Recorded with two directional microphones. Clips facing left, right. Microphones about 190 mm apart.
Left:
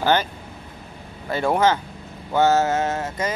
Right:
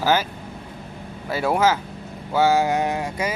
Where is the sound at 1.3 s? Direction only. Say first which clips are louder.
Left 1 dB; 5° right (ahead or behind).